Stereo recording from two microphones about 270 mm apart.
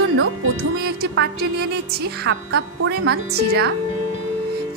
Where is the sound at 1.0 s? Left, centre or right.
Right.